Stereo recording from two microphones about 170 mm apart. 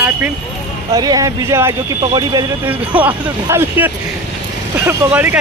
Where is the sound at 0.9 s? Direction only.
20° right (ahead or behind).